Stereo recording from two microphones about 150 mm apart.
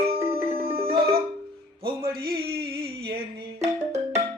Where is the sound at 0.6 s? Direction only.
80° right.